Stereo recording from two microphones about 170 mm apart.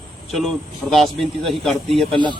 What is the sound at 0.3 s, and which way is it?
A man's voice, centre (ahead or behind).